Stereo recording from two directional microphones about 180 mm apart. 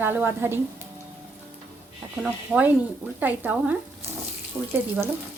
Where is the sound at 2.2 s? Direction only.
5° right (ahead or behind).